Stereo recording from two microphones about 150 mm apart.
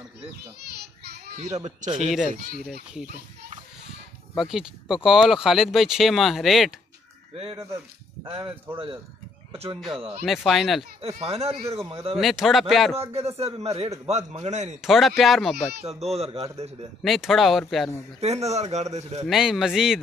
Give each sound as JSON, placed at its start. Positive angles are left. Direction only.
{"t": 0.4, "sound": "children playing", "side_deg": -90}
{"t": 4.4, "sound": "speech", "side_deg": -5}
{"t": 7.5, "sound": "speech", "side_deg": -20}
{"t": 8.3, "sound": "speech", "side_deg": -35}
{"t": 10.2, "sound": "speech", "side_deg": 0}
{"t": 11.0, "sound": "speech", "side_deg": -40}
{"t": 12.2, "sound": "speech", "side_deg": 0}
{"t": 12.9, "sound": "a man's voice", "side_deg": -45}
{"t": 14.8, "sound": "speech", "side_deg": 0}
{"t": 15.8, "sound": "a man's voice", "side_deg": -45}
{"t": 17.0, "sound": "speech", "side_deg": 0}
{"t": 18.2, "sound": "a man's voice", "side_deg": -45}
{"t": 19.2, "sound": "speech", "side_deg": 0}